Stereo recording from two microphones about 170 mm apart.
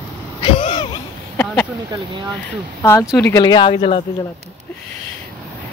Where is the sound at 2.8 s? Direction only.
15° left (ahead or behind).